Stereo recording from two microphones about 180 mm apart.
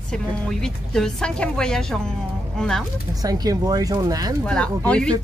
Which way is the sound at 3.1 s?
20° right (ahead or behind).